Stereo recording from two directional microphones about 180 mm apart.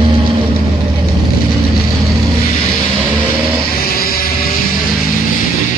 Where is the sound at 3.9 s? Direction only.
55° left (ahead or behind).